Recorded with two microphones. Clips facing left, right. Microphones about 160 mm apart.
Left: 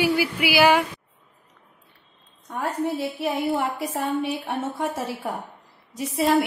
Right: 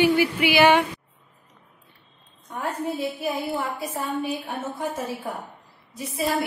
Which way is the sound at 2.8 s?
70° left (ahead or behind).